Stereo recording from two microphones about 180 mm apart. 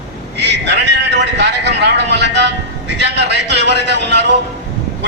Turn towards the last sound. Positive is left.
turn(degrees=-70)  # may be behind; listen again after turning